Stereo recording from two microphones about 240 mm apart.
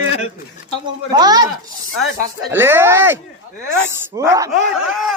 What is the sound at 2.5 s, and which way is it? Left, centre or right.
Speech, centre.